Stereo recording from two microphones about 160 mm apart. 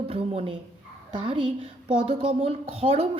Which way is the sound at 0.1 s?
35° right (ahead or behind).